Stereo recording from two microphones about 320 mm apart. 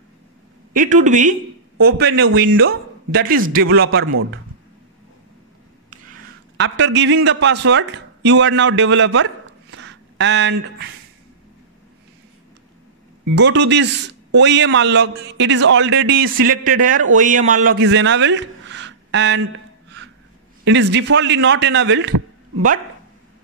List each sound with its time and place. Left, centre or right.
0.7 s speech: right
2.0 s a man's voice: right
3.6 s a man's voice: right
6.5 s speech: right
13.2 s a man's voice: right